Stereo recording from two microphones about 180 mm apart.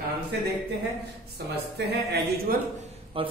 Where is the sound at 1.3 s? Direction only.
65° right (ahead or behind).